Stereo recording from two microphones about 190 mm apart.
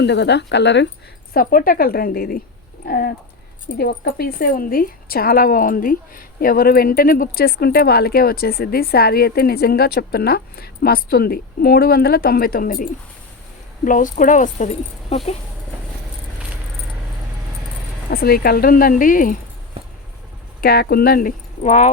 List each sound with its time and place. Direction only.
0.0 s speech: 65° left (ahead or behind)
1.3 s a woman's voice: 50° left (ahead or behind)
18.1 s a woman's voice: 50° left (ahead or behind)
20.6 s speech: 55° left (ahead or behind)